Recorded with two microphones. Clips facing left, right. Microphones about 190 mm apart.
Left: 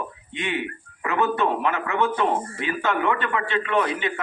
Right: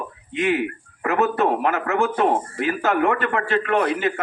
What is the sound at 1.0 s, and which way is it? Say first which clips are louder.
A man's voice: right 3 dB; 45° right (ahead or behind).